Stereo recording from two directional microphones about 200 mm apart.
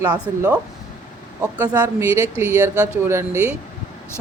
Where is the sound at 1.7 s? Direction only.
15° right (ahead or behind).